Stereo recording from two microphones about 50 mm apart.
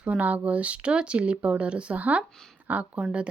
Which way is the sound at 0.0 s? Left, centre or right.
Right.